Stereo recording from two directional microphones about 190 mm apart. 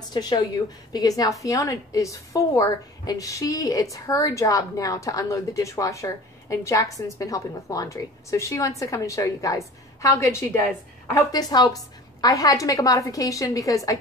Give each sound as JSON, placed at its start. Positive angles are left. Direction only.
{"t": 0.1, "sound": "a woman's voice", "side_deg": 20}